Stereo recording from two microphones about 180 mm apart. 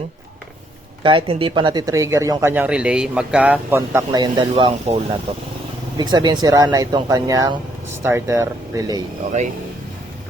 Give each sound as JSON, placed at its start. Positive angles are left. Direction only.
{"t": 1.0, "sound": "speech", "side_deg": -30}
{"t": 6.0, "sound": "speech", "side_deg": -25}